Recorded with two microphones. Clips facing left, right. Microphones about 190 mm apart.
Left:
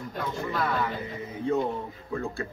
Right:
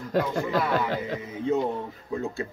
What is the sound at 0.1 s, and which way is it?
Speech, 90° right.